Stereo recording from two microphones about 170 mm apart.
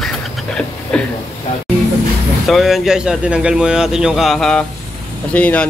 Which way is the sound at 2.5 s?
Centre (ahead or behind).